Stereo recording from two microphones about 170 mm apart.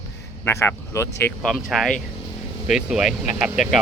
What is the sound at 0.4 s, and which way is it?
Speech, 15° left (ahead or behind).